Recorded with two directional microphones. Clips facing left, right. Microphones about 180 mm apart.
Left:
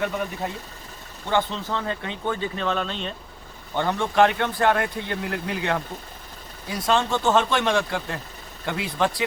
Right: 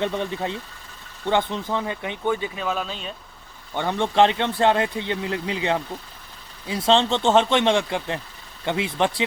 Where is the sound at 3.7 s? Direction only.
20° right (ahead or behind).